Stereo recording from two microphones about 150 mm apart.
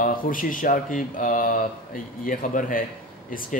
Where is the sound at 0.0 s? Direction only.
65° left (ahead or behind).